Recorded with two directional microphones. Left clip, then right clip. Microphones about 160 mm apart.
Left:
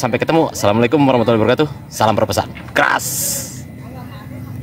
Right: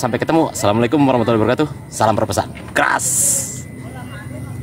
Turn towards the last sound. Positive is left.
turn(degrees=25)  # may be behind; listen again after turning